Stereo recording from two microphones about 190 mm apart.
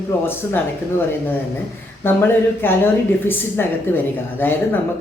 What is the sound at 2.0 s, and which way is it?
A woman's voice, 10° left (ahead or behind).